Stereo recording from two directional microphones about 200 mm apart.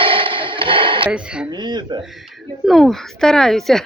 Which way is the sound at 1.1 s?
5° right (ahead or behind).